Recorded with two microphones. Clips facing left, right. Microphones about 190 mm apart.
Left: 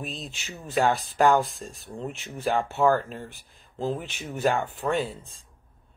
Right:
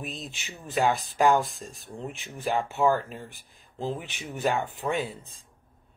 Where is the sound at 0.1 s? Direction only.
Centre (ahead or behind).